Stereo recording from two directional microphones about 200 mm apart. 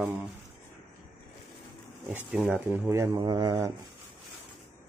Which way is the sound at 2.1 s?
10° right (ahead or behind).